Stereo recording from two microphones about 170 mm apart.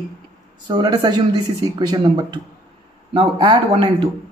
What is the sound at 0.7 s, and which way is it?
Speech, 25° right (ahead or behind).